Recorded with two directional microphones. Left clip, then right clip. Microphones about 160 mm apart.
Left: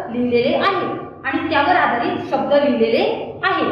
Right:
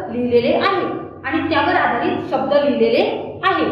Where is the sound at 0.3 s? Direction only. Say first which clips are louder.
Right 1 dB; 25° right (ahead or behind).